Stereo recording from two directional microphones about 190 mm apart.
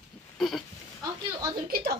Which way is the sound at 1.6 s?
50° right (ahead or behind).